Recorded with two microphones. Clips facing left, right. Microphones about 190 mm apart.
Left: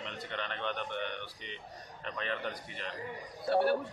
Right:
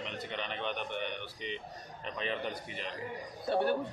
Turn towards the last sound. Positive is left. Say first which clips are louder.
# left 2 dB
turn(degrees=-20)  # may be behind; listen again after turning